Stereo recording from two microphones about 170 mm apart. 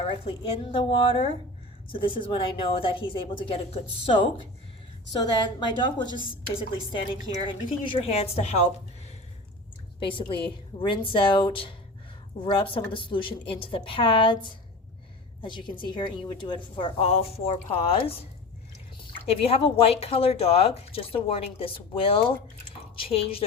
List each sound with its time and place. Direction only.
0.0 s a woman's voice: 35° left (ahead or behind)
7.4 s speech: 30° left (ahead or behind)
10.0 s a woman's voice: 30° left (ahead or behind)
19.2 s speech: 35° left (ahead or behind)